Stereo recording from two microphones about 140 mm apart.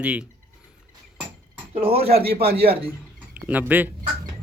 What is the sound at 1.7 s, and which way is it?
Speech, 45° right (ahead or behind).